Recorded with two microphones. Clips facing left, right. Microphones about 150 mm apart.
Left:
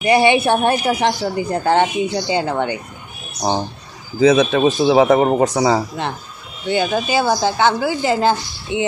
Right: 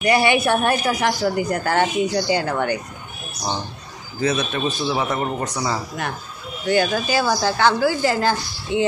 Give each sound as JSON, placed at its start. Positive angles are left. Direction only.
{"t": 0.0, "sound": "speech", "side_deg": 25}
{"t": 4.5, "sound": "speech", "side_deg": 90}
{"t": 6.0, "sound": "speech", "side_deg": 25}